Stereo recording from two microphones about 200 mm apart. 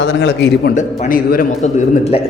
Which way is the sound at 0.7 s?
40° left (ahead or behind).